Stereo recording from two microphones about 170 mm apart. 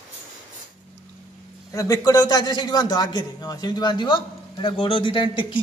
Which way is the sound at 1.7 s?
20° left (ahead or behind).